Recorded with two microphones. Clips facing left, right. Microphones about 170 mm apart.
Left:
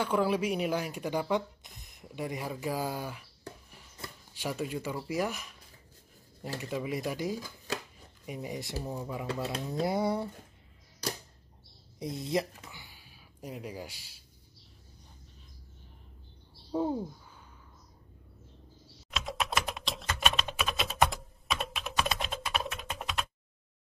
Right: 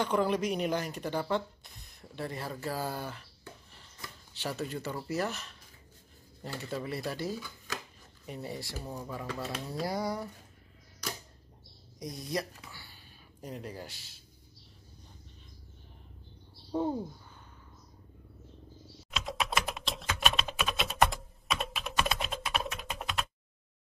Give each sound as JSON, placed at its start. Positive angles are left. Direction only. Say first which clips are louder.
{"t": 0.0, "sound": "speech", "louder": "even", "side_deg": 5}
{"t": 4.3, "sound": "speech", "louder": "left 2 dB", "side_deg": 10}
{"t": 6.6, "sound": "speech", "louder": "left 2 dB", "side_deg": 15}
{"t": 7.3, "sound": "a sound", "louder": "left 3 dB", "side_deg": 40}
{"t": 8.3, "sound": "speech", "louder": "left 2 dB", "side_deg": 15}
{"t": 12.0, "sound": "speech", "louder": "left 4 dB", "side_deg": 25}
{"t": 16.7, "sound": "speech", "louder": "left 1 dB", "side_deg": 5}
{"t": 19.0, "sound": "typing", "louder": "even", "side_deg": 0}